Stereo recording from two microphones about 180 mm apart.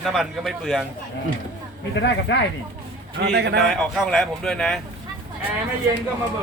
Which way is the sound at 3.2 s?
70° right (ahead or behind).